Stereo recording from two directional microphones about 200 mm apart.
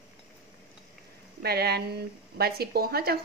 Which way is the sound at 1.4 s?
55° right (ahead or behind).